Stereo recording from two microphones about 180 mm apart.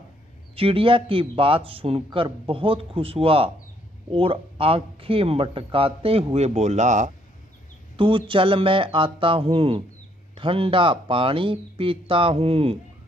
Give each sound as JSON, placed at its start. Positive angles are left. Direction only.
{"t": 0.6, "sound": "a man's voice", "side_deg": -30}
{"t": 7.9, "sound": "speech", "side_deg": -30}